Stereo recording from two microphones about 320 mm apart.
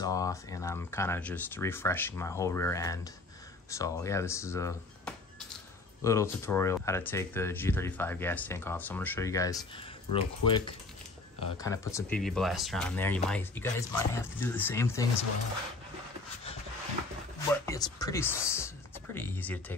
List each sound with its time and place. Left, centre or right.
0.0 s speech: centre
17.6 s speech: centre